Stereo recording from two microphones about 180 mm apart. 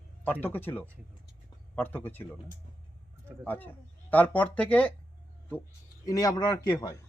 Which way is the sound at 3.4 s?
10° left (ahead or behind).